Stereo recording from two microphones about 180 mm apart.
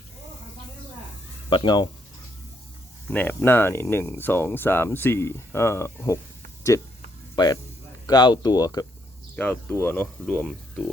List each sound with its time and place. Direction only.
1.5 s speech: 25° left (ahead or behind)
3.1 s speech: 10° left (ahead or behind)
9.3 s speech: 10° left (ahead or behind)